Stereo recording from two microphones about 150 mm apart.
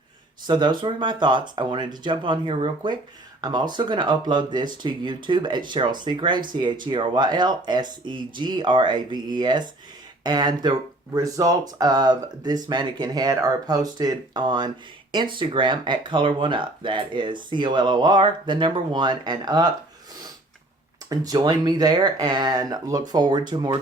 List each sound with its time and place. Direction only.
0.4 s speech: 30° right (ahead or behind)
21.1 s speech: 25° right (ahead or behind)